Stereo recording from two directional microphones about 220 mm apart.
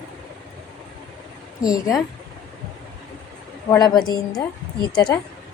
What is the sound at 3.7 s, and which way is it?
A woman's voice, 20° left (ahead or behind).